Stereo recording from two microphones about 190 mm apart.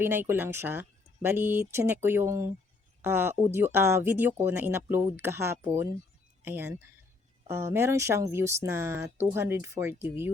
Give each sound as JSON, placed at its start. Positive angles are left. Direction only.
{"t": 0.0, "sound": "speech", "side_deg": -10}